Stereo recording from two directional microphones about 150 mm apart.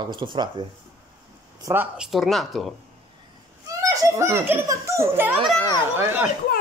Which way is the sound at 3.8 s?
20° right (ahead or behind).